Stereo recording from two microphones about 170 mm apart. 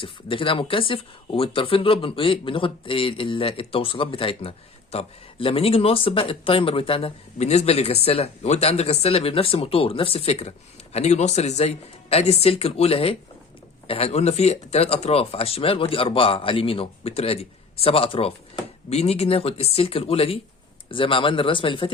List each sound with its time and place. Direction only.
0.0 s speech: 30° left (ahead or behind)